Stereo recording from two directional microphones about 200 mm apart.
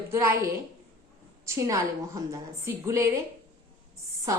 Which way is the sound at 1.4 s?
15° right (ahead or behind).